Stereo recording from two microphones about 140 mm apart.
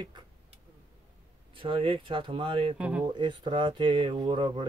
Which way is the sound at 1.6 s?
40° right (ahead or behind).